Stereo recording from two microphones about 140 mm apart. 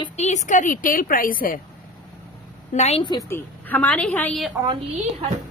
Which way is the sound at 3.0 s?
30° left (ahead or behind).